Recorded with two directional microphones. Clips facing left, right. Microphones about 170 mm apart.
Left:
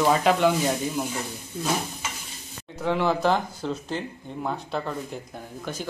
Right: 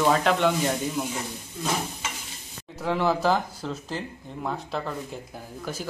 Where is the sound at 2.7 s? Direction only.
Centre (ahead or behind).